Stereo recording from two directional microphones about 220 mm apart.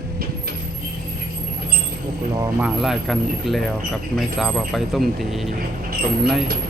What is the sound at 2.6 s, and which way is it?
Speech, centre (ahead or behind).